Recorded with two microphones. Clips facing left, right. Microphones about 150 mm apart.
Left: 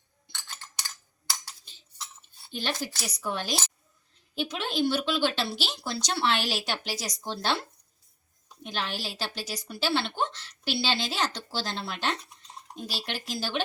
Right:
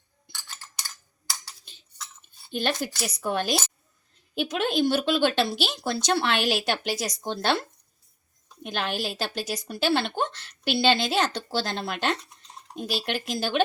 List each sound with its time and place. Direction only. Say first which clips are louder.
2.5 s speech: right 5 dB; 55° right (ahead or behind)
8.6 s speech: right 4 dB; 55° right (ahead or behind)